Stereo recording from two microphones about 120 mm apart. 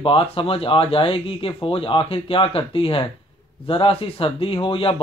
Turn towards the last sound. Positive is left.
turn(degrees=50)  # may be behind; listen again after turning